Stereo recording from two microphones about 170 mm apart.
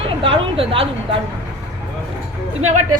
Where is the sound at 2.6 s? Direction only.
45° right (ahead or behind).